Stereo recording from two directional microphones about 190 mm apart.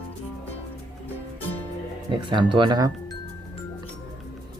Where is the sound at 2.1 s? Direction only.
25° right (ahead or behind).